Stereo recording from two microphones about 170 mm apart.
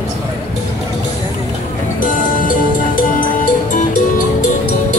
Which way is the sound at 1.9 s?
55° left (ahead or behind).